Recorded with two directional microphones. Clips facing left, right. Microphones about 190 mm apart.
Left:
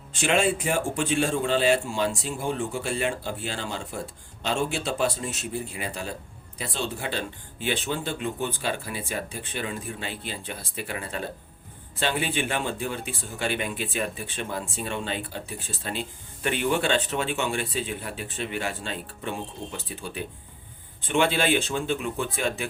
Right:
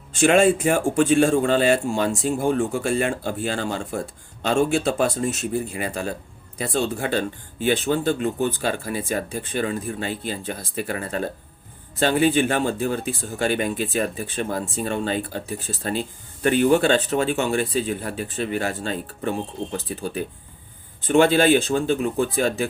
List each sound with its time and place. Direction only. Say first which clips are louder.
0.1 s speech: right 7 dB; 50° right (ahead or behind)